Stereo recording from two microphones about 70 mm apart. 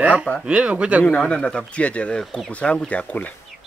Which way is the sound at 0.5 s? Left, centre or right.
Centre.